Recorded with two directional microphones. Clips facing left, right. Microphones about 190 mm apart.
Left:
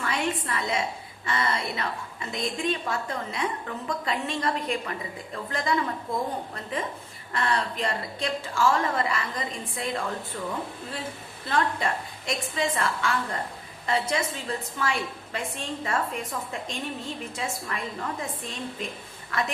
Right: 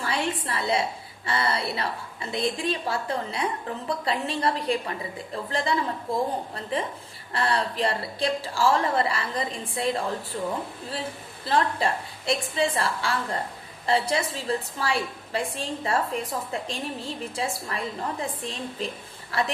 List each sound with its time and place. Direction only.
0.0 s a woman's voice: 30° right (ahead or behind)
11.4 s a woman's voice: 30° right (ahead or behind)